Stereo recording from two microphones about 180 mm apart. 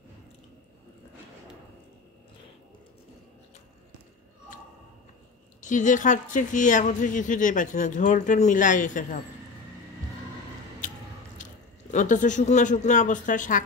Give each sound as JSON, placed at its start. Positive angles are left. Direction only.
{"t": 5.6, "sound": "a woman's voice", "side_deg": 45}
{"t": 11.9, "sound": "a woman's voice", "side_deg": 45}